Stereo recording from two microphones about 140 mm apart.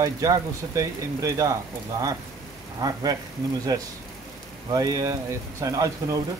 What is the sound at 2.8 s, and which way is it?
Speech, 25° right (ahead or behind).